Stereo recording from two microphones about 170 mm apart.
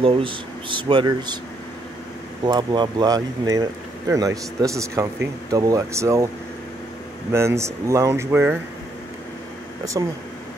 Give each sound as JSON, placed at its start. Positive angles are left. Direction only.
{"t": 0.0, "sound": "speech", "side_deg": -30}
{"t": 2.4, "sound": "speech", "side_deg": -25}
{"t": 7.3, "sound": "speech", "side_deg": -15}
{"t": 9.9, "sound": "speech", "side_deg": -20}